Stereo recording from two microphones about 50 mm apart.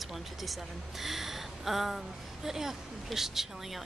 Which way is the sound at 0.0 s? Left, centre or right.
Centre.